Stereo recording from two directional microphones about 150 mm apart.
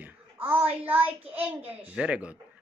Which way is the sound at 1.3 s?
40° right (ahead or behind).